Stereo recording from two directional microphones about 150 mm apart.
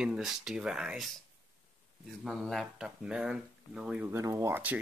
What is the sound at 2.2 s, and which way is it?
Speech, centre (ahead or behind).